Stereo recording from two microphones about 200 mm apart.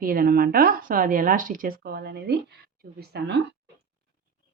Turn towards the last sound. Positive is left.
turn(degrees=-60)  # may be behind; listen again after turning